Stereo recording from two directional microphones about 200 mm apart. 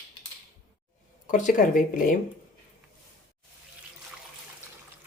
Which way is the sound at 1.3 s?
40° left (ahead or behind).